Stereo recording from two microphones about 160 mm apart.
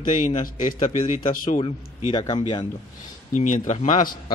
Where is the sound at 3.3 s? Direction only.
50° left (ahead or behind).